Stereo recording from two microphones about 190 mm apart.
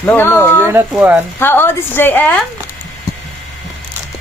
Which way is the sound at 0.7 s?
10° right (ahead or behind).